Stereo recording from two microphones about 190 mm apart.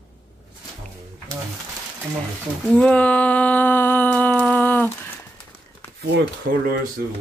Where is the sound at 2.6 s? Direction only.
5° left (ahead or behind).